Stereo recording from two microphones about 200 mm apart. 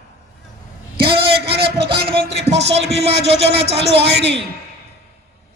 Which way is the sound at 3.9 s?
60° right (ahead or behind).